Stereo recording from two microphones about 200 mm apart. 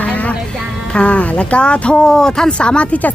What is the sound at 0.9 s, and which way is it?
A woman's voice, 5° left (ahead or behind).